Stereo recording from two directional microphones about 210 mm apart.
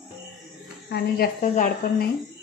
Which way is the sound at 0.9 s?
45° left (ahead or behind).